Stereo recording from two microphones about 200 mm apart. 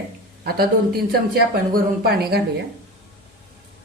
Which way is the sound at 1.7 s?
50° right (ahead or behind).